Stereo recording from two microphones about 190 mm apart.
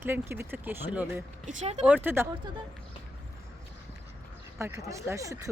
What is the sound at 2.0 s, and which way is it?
Speech, 10° right (ahead or behind).